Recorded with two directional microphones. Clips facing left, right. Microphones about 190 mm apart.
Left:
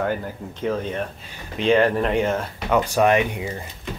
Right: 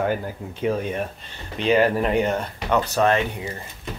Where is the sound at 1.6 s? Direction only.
5° right (ahead or behind).